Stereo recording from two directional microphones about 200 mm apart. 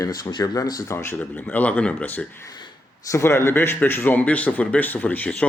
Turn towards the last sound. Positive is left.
turn(degrees=10)  # may be behind; listen again after turning